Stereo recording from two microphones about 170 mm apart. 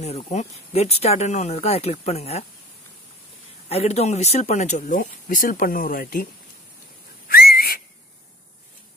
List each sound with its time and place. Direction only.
0.0 s speech: 40° left (ahead or behind)
3.6 s speech: 40° left (ahead or behind); by 6.2 s 55° left (ahead or behind)
7.2 s whistle: 60° left (ahead or behind)